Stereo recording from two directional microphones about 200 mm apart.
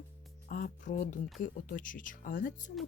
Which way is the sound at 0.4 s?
45° left (ahead or behind).